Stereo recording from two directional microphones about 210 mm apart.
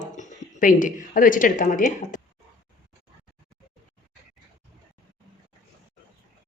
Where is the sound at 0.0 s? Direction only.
35° left (ahead or behind).